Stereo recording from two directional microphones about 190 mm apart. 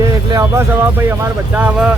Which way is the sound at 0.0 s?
15° right (ahead or behind).